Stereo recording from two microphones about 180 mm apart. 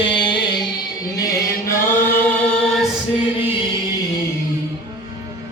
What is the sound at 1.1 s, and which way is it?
Chant, 20° left (ahead or behind).